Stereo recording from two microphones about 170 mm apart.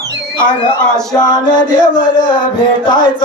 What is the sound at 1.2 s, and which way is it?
Music, 25° left (ahead or behind).